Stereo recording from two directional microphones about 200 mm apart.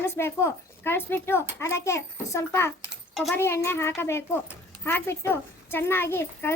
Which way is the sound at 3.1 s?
Centre (ahead or behind).